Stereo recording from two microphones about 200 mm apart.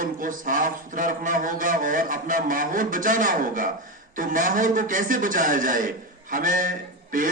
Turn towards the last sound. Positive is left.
turn(degrees=-45)  # may be behind; listen again after turning